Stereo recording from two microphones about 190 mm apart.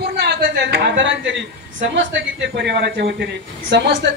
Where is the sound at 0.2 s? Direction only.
60° right (ahead or behind).